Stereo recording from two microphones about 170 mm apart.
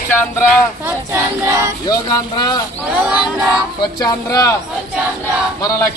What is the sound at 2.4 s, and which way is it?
Speech, 25° left (ahead or behind).